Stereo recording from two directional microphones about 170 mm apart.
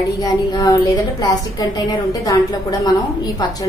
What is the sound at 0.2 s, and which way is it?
A woman's voice, 20° left (ahead or behind).